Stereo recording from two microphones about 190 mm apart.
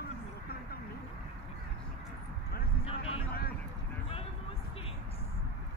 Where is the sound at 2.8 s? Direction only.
30° left (ahead or behind).